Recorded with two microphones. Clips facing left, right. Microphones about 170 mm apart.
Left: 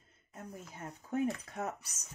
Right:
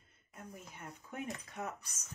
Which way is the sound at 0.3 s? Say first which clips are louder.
Left 3 dB; 30° left (ahead or behind).